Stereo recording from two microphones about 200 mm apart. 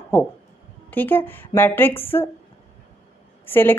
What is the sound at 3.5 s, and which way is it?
Speech, 10° left (ahead or behind).